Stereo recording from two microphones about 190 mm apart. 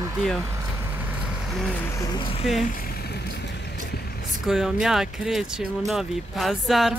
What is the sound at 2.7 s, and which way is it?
Vehicle, 60° left (ahead or behind).